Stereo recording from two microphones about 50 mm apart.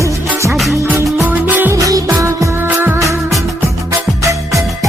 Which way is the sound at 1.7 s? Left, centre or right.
Right.